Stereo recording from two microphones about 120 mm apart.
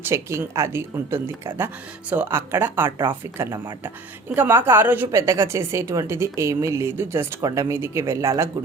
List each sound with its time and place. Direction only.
0.0 s a woman's voice: 20° right (ahead or behind)